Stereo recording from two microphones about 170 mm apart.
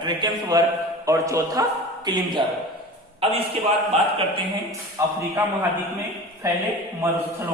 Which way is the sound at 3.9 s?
35° right (ahead or behind).